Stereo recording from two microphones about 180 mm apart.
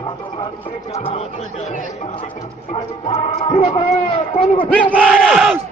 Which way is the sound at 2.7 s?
35° left (ahead or behind).